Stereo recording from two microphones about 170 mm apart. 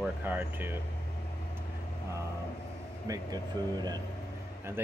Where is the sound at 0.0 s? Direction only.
10° right (ahead or behind).